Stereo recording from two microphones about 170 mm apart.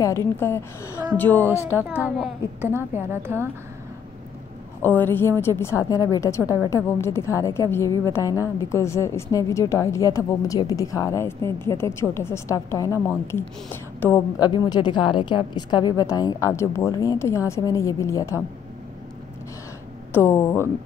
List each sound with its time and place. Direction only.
0.0 s a woman's voice: 15° left (ahead or behind)
1.7 s a woman's voice: 10° right (ahead or behind)
4.8 s a woman's voice: 10° left (ahead or behind)
14.4 s a woman's voice: 25° left (ahead or behind)
20.1 s speech: 10° left (ahead or behind)